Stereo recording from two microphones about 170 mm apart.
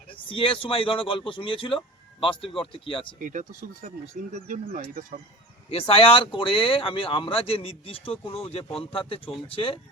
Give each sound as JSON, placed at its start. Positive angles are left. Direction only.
{"t": 0.1, "sound": "speech", "side_deg": 30}
{"t": 3.2, "sound": "speech", "side_deg": -50}
{"t": 5.7, "sound": "speech", "side_deg": 35}